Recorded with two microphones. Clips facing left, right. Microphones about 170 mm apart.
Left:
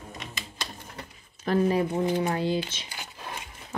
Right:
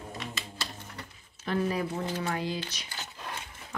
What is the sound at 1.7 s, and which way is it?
Speech, 30° left (ahead or behind).